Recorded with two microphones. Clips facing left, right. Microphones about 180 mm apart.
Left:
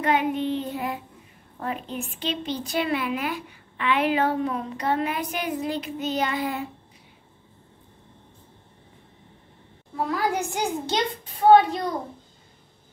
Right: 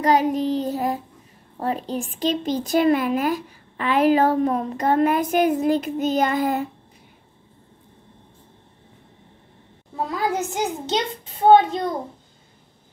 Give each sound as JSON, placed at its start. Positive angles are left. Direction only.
{"t": 0.0, "sound": "child singing", "side_deg": -40}
{"t": 1.6, "sound": "speech", "side_deg": -35}
{"t": 9.9, "sound": "a child's voice", "side_deg": -20}